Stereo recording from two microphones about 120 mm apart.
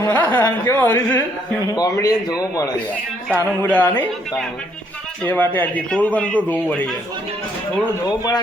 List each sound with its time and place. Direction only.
0.1 s speech: 15° left (ahead or behind)
1.7 s a man's voice: 30° left (ahead or behind)
3.3 s speech: 15° left (ahead or behind)
5.2 s speech: 15° left (ahead or behind)